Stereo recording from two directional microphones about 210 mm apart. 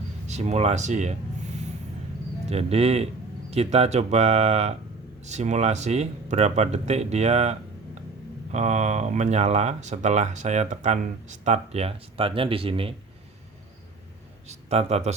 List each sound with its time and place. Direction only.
0.3 s speech: 30° right (ahead or behind)
2.5 s speech: 30° right (ahead or behind)
8.5 s speech: 35° right (ahead or behind)
14.4 s speech: 30° right (ahead or behind)